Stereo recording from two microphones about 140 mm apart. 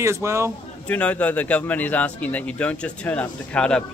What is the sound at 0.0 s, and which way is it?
Speech, 20° right (ahead or behind).